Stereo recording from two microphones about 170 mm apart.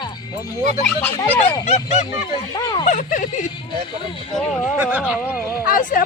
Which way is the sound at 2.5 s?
25° left (ahead or behind).